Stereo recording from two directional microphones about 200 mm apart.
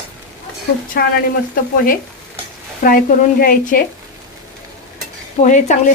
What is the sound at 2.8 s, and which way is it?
A woman's voice, 45° left (ahead or behind).